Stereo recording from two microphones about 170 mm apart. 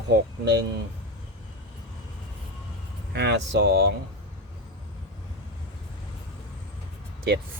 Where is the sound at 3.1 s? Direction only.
90° right.